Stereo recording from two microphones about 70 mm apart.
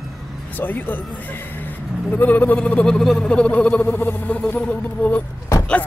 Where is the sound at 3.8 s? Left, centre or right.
Left.